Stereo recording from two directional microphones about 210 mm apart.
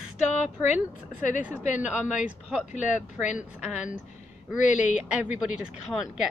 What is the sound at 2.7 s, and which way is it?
Speech, 35° left (ahead or behind).